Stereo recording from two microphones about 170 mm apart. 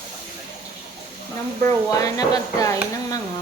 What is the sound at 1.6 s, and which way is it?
Speech, 20° left (ahead or behind).